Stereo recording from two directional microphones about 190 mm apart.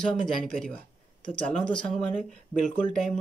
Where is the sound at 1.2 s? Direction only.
5° left (ahead or behind).